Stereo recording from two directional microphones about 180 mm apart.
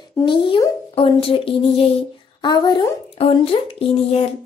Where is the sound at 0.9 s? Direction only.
30° left (ahead or behind).